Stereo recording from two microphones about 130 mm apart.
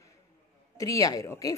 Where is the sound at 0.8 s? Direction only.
25° left (ahead or behind).